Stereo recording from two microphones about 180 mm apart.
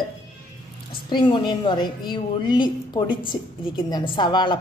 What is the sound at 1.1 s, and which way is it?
A woman's voice, 25° left (ahead or behind).